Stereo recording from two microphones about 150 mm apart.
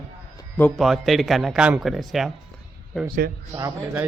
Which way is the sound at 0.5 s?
10° left (ahead or behind).